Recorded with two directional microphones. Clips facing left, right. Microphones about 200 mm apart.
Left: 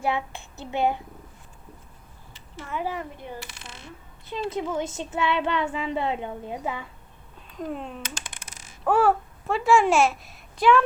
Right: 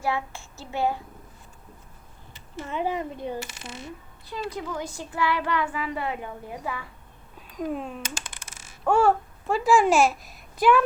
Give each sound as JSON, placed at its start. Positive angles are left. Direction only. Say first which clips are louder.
{"t": 0.0, "sound": "speech", "louder": "left 1 dB", "side_deg": 20}
{"t": 2.6, "sound": "speech", "louder": "right 3 dB", "side_deg": -20}
{"t": 4.3, "sound": "speech", "louder": "left 4 dB", "side_deg": 25}
{"t": 7.6, "sound": "a child's voice", "louder": "right 2 dB", "side_deg": -5}